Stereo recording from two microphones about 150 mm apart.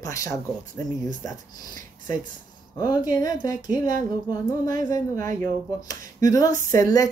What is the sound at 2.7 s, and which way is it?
Speech, 25° left (ahead or behind).